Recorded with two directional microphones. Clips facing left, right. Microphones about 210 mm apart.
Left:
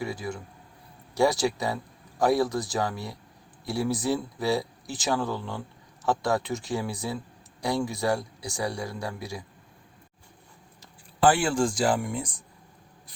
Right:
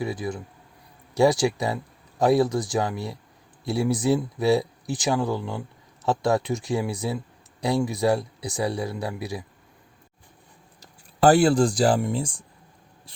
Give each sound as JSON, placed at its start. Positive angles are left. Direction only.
{"t": 0.0, "sound": "speech", "side_deg": -20}
{"t": 10.8, "sound": "speech", "side_deg": -40}